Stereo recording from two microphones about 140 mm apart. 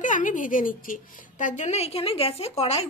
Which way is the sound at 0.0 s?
65° left (ahead or behind).